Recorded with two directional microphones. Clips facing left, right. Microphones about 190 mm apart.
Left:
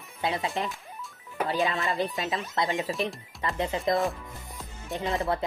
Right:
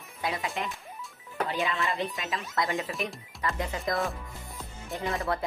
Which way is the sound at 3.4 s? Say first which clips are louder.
Left 3 dB; 25° left (ahead or behind).